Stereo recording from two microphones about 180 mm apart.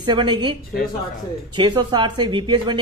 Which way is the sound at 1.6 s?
25° right (ahead or behind).